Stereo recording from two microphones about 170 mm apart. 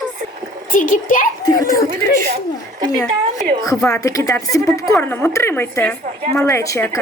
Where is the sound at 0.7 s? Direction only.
50° left (ahead or behind).